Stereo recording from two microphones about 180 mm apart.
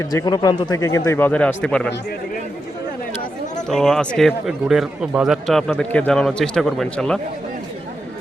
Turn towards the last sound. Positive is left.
turn(degrees=5)  # may be behind; listen again after turning